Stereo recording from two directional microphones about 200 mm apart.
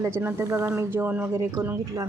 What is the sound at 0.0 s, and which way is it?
Speech, 10° right (ahead or behind).